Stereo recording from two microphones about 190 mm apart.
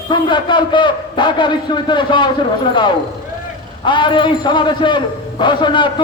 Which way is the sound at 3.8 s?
25° left (ahead or behind).